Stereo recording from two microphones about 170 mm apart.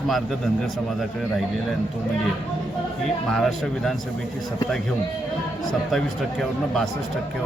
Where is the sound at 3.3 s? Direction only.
Centre (ahead or behind).